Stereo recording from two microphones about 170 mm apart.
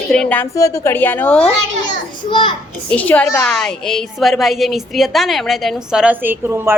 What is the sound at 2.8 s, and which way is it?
A woman's voice, 10° left (ahead or behind).